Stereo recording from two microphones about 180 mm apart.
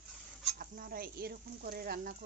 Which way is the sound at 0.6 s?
55° right (ahead or behind).